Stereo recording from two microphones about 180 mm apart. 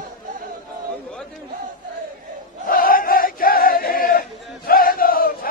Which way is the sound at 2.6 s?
50° left (ahead or behind).